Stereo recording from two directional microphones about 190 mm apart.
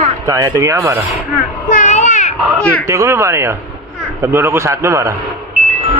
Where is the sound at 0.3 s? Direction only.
20° right (ahead or behind).